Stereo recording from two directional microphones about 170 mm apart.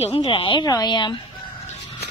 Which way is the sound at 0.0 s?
30° left (ahead or behind).